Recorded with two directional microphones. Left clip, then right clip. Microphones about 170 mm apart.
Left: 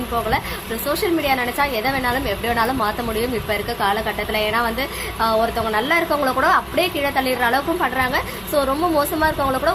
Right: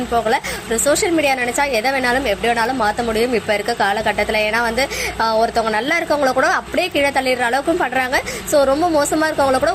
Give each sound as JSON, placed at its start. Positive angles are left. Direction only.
{"t": 0.9, "sound": "a woman's voice", "side_deg": -15}